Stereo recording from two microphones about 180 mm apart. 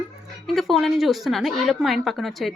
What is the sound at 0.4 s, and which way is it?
A woman's voice, centre (ahead or behind).